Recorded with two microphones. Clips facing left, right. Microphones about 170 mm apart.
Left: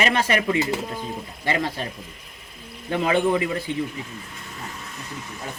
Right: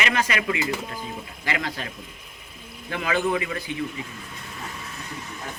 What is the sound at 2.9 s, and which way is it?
Speech, 25° left (ahead or behind).